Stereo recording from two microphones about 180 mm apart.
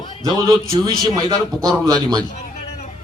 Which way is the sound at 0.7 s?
20° right (ahead or behind).